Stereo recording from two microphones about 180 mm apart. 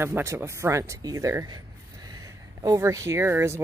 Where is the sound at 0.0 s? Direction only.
15° right (ahead or behind).